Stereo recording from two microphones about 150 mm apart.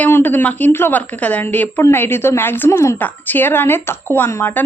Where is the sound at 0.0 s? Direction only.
15° left (ahead or behind).